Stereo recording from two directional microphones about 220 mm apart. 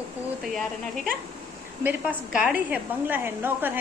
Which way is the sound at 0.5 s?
Centre (ahead or behind).